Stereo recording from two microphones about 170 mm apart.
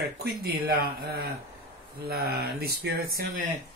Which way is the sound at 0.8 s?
65° right (ahead or behind).